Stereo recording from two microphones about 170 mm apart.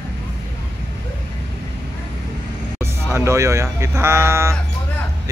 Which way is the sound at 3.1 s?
15° right (ahead or behind).